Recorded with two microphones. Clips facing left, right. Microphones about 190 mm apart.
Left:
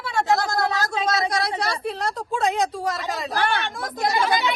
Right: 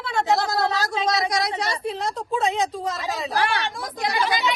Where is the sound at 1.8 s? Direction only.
Centre (ahead or behind).